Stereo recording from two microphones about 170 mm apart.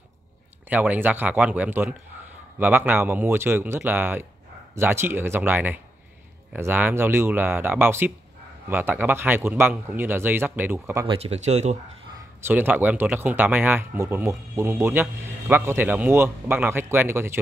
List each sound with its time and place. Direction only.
0.7 s a man's voice: 10° right (ahead or behind)
11.1 s speech: 35° right (ahead or behind)
12.4 s a man's voice: 10° right (ahead or behind)